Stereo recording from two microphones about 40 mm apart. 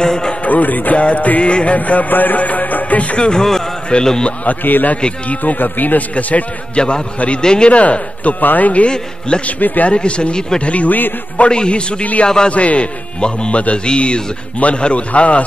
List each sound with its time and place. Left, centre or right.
0.0 s music: centre
0.5 s a man's voice: left
1.4 s speech: left
1.8 s a man's voice: left; by 4.3 s centre
4.5 s speech: left
6.1 s a man's voice: left
7.4 s speech: left
7.8 s a man's voice: left
8.8 s speech: left
10.9 s speech: left
11.3 s a man's voice: left